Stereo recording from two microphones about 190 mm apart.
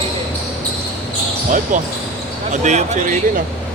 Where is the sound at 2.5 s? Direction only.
40° right (ahead or behind).